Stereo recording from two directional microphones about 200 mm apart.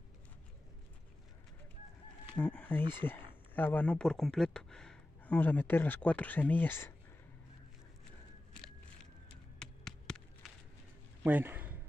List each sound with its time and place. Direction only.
2.3 s speech: 10° left (ahead or behind)
9.6 s a sound: 5° left (ahead or behind)
11.2 s a man's voice: 10° right (ahead or behind)